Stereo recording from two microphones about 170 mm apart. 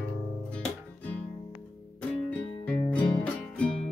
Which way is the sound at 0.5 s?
5° left (ahead or behind).